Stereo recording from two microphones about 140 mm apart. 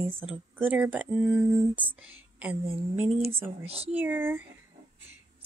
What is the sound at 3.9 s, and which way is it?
Speech, 10° right (ahead or behind).